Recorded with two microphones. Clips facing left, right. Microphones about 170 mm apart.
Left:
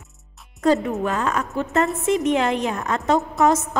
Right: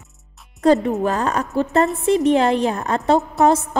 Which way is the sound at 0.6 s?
35° right (ahead or behind).